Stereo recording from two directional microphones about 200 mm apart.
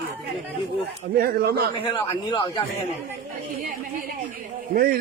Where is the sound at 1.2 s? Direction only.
50° right (ahead or behind).